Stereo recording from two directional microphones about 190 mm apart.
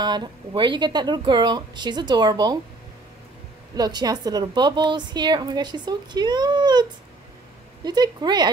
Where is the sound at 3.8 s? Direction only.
20° right (ahead or behind).